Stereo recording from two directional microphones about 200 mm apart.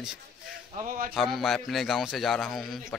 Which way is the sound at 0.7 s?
45° right (ahead or behind).